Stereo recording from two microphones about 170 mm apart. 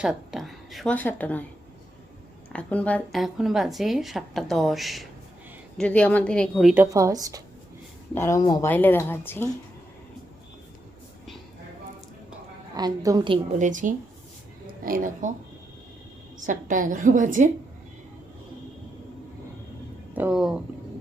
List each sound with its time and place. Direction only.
0.0 s a woman's voice: 5° right (ahead or behind)
2.5 s speech: 10° left (ahead or behind)
6.7 s speech: 20° right (ahead or behind)
8.1 s speech: 15° left (ahead or behind)
8.7 s speech: 10° left (ahead or behind)
12.7 s speech: 20° right (ahead or behind)
13.6 s a woman's voice: 50° right (ahead or behind)
16.5 s a woman's voice: 50° right (ahead or behind)
20.1 s speech: 5° right (ahead or behind)